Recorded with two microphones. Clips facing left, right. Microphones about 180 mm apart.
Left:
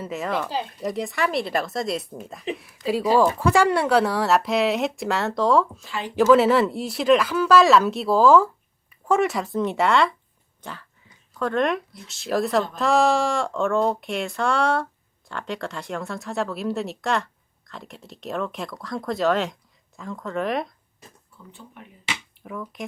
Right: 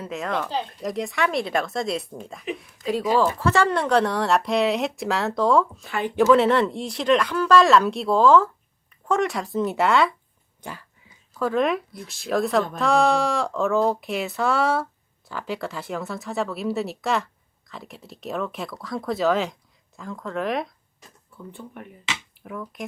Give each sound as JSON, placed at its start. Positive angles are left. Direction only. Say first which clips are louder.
{"t": 0.0, "sound": "speech", "louder": "left 1 dB", "side_deg": 0}
{"t": 5.8, "sound": "speech", "louder": "right 4 dB", "side_deg": -55}
{"t": 6.1, "sound": "speech", "louder": "left 1 dB", "side_deg": 0}
{"t": 10.6, "sound": "dog", "louder": "right 1 dB", "side_deg": -10}
{"t": 11.3, "sound": "speech", "louder": "right 1 dB", "side_deg": -5}
{"t": 11.9, "sound": "speech", "louder": "right 4 dB", "side_deg": -55}
{"t": 12.3, "sound": "speech", "louder": "even", "side_deg": 0}
{"t": 21.5, "sound": "speech", "louder": "right 5 dB", "side_deg": -55}
{"t": 22.4, "sound": "speech", "louder": "even", "side_deg": 0}